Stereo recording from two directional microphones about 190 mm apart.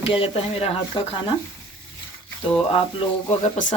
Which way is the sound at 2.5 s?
30° left (ahead or behind).